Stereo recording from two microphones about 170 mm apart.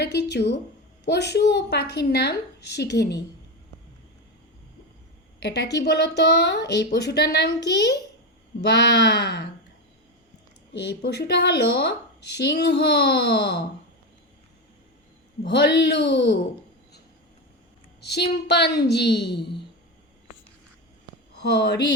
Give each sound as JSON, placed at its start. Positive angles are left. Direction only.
{"t": 0.0, "sound": "speech", "side_deg": 80}
{"t": 5.4, "sound": "speech", "side_deg": 80}
{"t": 10.8, "sound": "a child's voice", "side_deg": 75}
{"t": 15.4, "sound": "speech", "side_deg": 85}
{"t": 18.4, "sound": "a child's voice", "side_deg": 80}
{"t": 21.4, "sound": "speech", "side_deg": 80}